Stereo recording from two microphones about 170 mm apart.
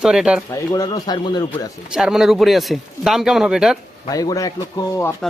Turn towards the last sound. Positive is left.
turn(degrees=20)  # may be behind; listen again after turning